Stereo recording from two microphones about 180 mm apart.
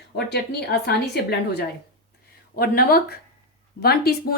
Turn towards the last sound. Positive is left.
turn(degrees=60)  # may be behind; listen again after turning